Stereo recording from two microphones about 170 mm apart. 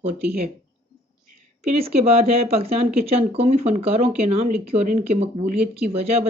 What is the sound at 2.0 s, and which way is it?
Speech, 35° right (ahead or behind).